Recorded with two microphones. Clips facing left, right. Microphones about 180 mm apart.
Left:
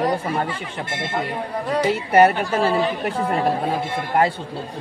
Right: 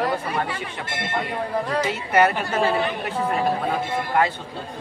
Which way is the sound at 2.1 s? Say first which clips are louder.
Left 4 dB; 35° left (ahead or behind).